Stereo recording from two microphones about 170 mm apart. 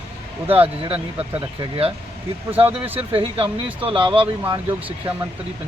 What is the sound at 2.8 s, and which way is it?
Speech, 10° right (ahead or behind).